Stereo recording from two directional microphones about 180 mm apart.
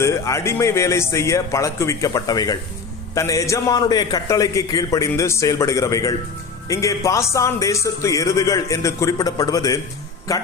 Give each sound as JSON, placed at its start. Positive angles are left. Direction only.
{"t": 0.0, "sound": "a man's voice", "side_deg": 15}